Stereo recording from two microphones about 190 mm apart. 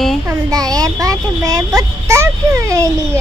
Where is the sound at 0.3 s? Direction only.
20° right (ahead or behind).